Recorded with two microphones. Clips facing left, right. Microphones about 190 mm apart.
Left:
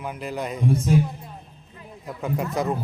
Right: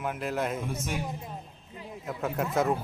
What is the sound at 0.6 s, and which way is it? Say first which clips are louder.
Speech: left 12 dB; 35° left (ahead or behind).